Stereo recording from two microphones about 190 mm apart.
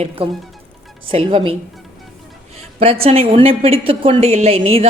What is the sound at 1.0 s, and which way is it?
Speech, 30° right (ahead or behind).